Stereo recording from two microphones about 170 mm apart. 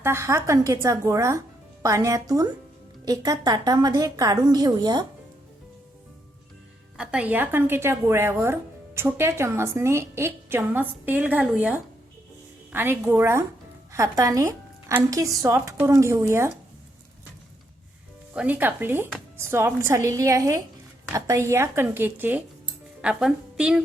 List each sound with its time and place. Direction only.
0.0 s speech: 15° right (ahead or behind)
6.9 s a woman's voice: 5° right (ahead or behind)
18.3 s a woman's voice: 10° right (ahead or behind)